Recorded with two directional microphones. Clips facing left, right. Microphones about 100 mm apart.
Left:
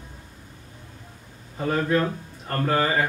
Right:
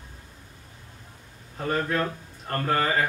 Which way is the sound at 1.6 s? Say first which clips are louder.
Left 3 dB; 5° left (ahead or behind).